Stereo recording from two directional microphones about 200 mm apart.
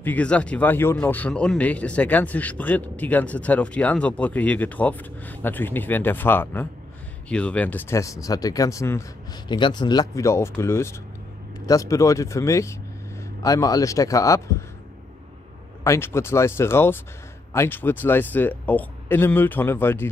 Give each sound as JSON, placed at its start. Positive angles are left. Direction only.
{"t": 0.0, "sound": "speech", "side_deg": 5}
{"t": 15.8, "sound": "speech", "side_deg": 15}